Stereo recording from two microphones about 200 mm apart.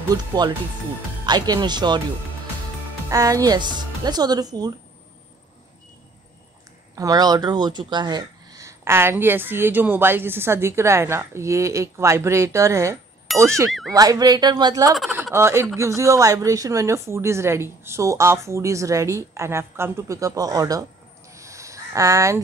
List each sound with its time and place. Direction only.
0.1 s speech: 20° right (ahead or behind)
3.1 s speech: 15° right (ahead or behind)
7.0 s speech: 20° right (ahead or behind)
13.7 s speech: centre (ahead or behind)
13.9 s speech: 20° right (ahead or behind)
21.3 s a sound: 15° right (ahead or behind)